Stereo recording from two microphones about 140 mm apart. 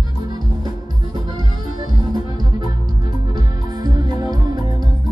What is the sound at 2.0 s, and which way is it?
Music, 30° right (ahead or behind).